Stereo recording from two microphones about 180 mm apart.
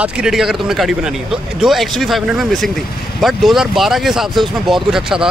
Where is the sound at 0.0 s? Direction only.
5° right (ahead or behind).